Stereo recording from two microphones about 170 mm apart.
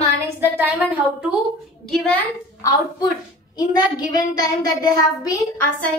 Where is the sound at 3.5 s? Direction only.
25° left (ahead or behind).